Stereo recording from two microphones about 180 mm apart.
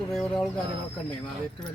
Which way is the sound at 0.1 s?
Centre (ahead or behind).